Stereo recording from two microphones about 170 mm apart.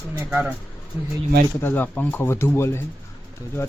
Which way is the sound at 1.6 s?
10° left (ahead or behind).